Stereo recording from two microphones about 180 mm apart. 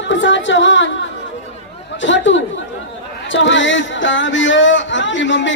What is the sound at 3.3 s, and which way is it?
A woman's voice, 90° left.